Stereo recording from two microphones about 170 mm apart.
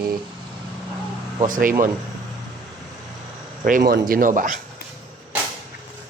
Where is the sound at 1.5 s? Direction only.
55° right (ahead or behind).